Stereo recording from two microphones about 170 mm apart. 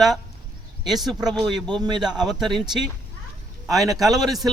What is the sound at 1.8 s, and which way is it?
Speech, 25° right (ahead or behind).